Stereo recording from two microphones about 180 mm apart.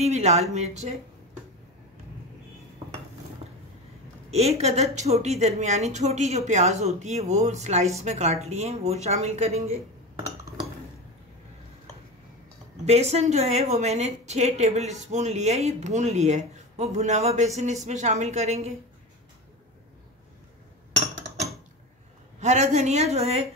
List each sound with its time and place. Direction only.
0.0 s speech: 40° right (ahead or behind)
4.3 s speech: 35° right (ahead or behind)
12.8 s speech: 35° right (ahead or behind)
22.4 s speech: 40° right (ahead or behind)